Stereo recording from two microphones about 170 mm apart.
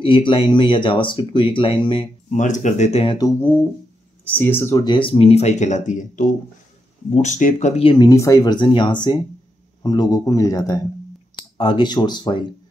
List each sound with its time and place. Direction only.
0.0 s speech: 30° left (ahead or behind)
2.3 s speech: 45° left (ahead or behind)
3.3 s speech: 15° left (ahead or behind)
4.8 s speech: 30° left (ahead or behind)